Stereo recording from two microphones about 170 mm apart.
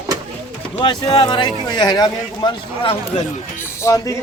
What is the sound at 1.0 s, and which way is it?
Speech, 25° left (ahead or behind).